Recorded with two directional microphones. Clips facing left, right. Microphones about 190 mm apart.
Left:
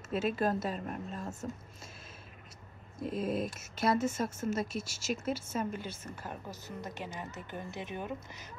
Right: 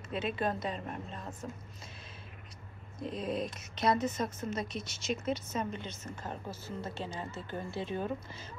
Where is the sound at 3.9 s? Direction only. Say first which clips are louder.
Left 2 dB; 50° left (ahead or behind).